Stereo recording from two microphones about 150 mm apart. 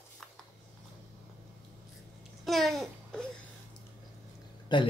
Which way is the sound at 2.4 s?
Centre (ahead or behind).